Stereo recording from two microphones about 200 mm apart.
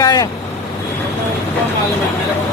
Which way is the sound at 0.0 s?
20° left (ahead or behind).